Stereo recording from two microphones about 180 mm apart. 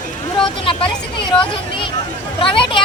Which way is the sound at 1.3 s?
30° left (ahead or behind).